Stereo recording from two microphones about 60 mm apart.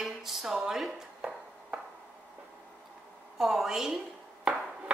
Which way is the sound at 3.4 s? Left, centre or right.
Centre.